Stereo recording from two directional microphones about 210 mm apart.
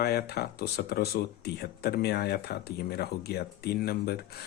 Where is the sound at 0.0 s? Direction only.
50° left (ahead or behind).